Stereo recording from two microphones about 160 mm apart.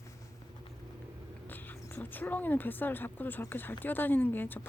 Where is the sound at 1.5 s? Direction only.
10° left (ahead or behind).